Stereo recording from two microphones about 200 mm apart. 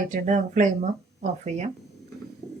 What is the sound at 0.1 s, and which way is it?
Speech, 40° right (ahead or behind).